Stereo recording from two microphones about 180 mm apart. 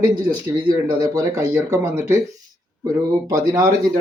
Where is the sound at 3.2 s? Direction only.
20° right (ahead or behind).